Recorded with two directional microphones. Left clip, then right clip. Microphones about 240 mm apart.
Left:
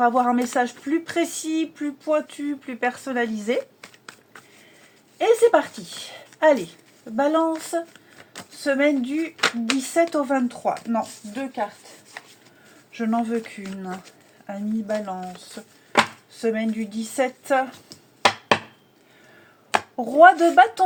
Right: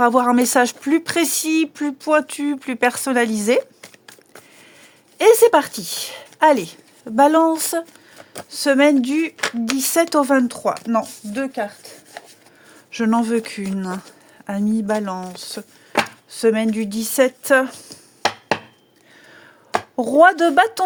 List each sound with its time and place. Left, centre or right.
0.0 s speech: right
5.1 s speech: right
9.4 s speech: right
9.8 s speech: right
12.9 s speech: right
20.0 s speech: right